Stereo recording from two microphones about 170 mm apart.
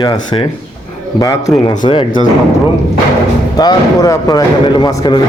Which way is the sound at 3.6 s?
20° left (ahead or behind).